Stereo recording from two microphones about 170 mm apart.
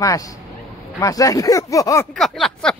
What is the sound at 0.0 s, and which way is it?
Speech, 20° left (ahead or behind).